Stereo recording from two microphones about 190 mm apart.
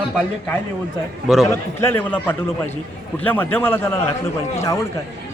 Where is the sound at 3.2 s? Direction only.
10° left (ahead or behind).